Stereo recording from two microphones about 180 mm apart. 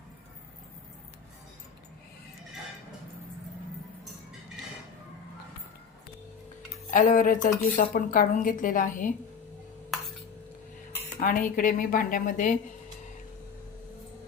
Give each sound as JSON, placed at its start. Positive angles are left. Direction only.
{"t": 6.9, "sound": "a woman's voice", "side_deg": 45}
{"t": 11.2, "sound": "a woman's voice", "side_deg": 50}